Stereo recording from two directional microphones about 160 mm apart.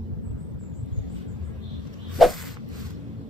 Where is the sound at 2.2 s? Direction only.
Centre (ahead or behind).